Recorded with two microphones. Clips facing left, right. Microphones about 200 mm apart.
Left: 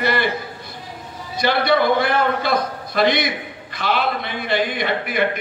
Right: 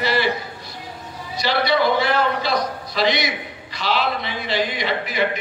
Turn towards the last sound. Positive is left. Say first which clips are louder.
# left 1 dB
turn(degrees=55)  # may be behind; listen again after turning